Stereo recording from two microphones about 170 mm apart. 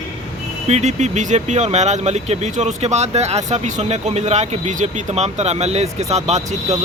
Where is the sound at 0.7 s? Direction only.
40° right (ahead or behind).